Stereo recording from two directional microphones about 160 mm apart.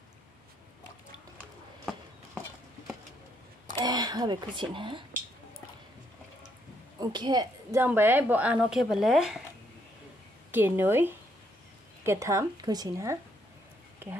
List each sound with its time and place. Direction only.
3.8 s speech: 25° right (ahead or behind)
7.0 s speech: 25° right (ahead or behind)
7.8 s speech: 15° right (ahead or behind)
10.5 s a woman's voice: 15° right (ahead or behind)